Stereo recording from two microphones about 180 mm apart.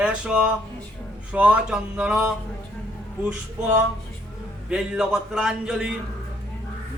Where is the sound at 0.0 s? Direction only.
5° right (ahead or behind).